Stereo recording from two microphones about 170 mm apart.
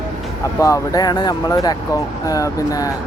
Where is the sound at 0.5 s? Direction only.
20° left (ahead or behind).